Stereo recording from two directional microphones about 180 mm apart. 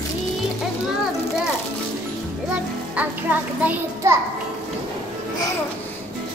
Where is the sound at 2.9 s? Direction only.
10° right (ahead or behind).